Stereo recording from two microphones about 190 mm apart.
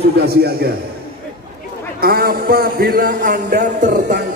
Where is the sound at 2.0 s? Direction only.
50° right (ahead or behind).